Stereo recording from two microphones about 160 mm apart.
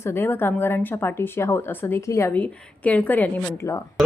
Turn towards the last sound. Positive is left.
turn(degrees=15)  # may be behind; listen again after turning